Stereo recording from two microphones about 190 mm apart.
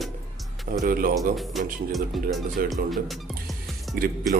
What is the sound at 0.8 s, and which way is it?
Speech, 45° right (ahead or behind).